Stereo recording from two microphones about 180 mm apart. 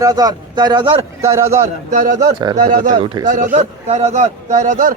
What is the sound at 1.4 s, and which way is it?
Speech, 40° right (ahead or behind).